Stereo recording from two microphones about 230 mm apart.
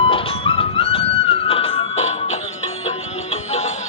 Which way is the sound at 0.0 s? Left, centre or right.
Left.